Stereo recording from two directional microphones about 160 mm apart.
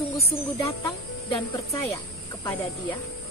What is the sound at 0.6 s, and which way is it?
Speech, 35° left (ahead or behind).